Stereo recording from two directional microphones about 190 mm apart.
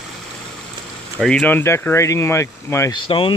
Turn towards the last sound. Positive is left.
turn(degrees=25)  # may be behind; listen again after turning